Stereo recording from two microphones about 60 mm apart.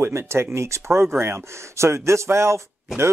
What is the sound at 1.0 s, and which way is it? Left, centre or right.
Speech, right.